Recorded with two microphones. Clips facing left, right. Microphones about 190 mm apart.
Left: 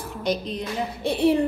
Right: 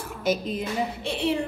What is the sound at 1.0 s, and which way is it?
Speech, 35° left (ahead or behind).